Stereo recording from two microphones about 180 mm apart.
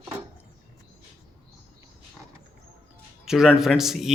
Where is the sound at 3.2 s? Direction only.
5° right (ahead or behind).